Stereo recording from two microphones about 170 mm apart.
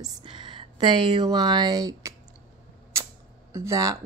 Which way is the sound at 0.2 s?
30° right (ahead or behind).